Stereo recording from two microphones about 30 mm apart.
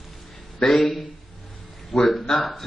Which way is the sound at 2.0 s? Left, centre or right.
Centre.